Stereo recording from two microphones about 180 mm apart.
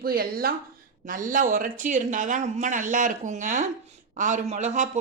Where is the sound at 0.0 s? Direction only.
55° right (ahead or behind).